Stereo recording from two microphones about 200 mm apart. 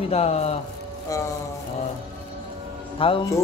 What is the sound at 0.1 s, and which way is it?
Speech, 30° left (ahead or behind).